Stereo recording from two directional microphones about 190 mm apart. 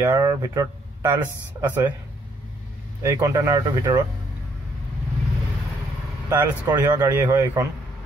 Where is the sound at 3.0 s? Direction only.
15° right (ahead or behind).